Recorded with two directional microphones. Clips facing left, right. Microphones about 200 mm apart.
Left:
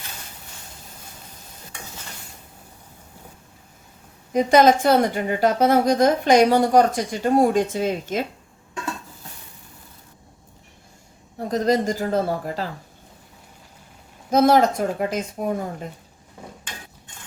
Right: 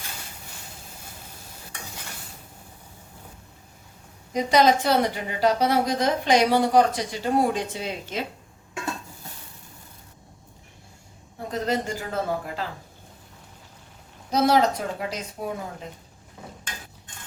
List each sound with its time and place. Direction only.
4.3 s a woman's voice: 50° left (ahead or behind)
11.6 s speech: 40° left (ahead or behind)
14.3 s a woman's voice: 50° left (ahead or behind)